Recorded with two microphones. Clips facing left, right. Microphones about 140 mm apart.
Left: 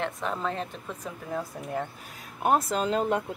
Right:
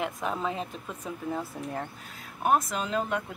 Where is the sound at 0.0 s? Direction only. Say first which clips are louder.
Even; 5° right (ahead or behind).